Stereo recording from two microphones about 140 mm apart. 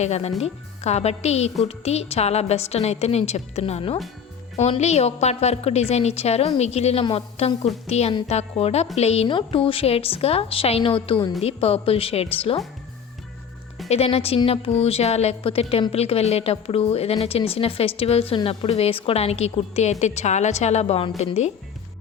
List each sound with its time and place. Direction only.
0.0 s a woman's voice: 50° left (ahead or behind)
13.8 s a woman's voice: 45° left (ahead or behind)